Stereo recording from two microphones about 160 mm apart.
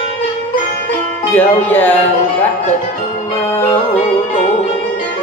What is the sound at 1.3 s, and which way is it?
Speech, 10° left (ahead or behind).